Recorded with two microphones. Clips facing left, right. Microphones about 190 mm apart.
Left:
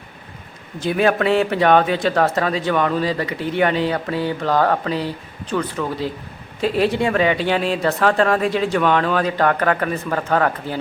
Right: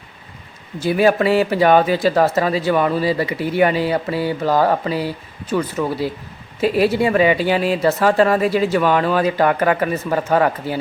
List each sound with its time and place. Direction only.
0.8 s speech: 5° right (ahead or behind)